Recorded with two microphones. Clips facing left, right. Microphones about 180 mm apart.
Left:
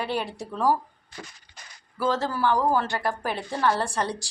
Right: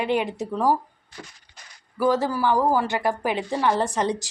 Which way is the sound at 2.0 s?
15° right (ahead or behind).